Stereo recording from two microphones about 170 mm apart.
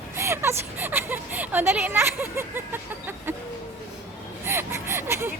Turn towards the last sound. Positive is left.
turn(degrees=-15)  # may be behind; listen again after turning